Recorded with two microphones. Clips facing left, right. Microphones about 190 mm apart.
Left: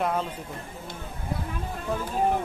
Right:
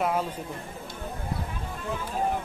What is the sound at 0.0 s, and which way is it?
Speech, 10° right (ahead or behind).